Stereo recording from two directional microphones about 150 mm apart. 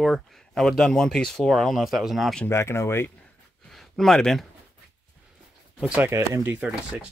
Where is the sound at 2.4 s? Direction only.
20° left (ahead or behind).